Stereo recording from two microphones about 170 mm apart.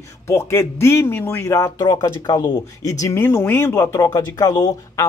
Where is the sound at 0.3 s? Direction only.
15° left (ahead or behind).